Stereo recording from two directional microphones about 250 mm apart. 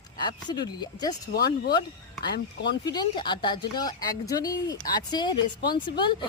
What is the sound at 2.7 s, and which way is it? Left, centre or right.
Speech, centre.